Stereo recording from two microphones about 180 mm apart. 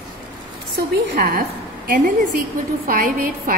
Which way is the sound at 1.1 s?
55° right (ahead or behind).